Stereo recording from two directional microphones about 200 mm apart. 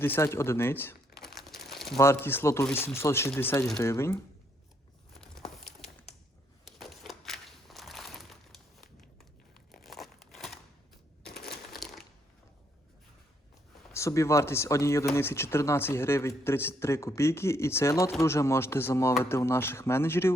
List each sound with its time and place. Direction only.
0.0 s speech: 10° left (ahead or behind)
1.2 s crumpling: centre (ahead or behind)
2.0 s speech: 10° left (ahead or behind)
6.7 s crumpling: centre (ahead or behind)
11.3 s crumpling: 55° left (ahead or behind)
11.7 s a sound: centre (ahead or behind)
13.9 s speech: 15° left (ahead or behind)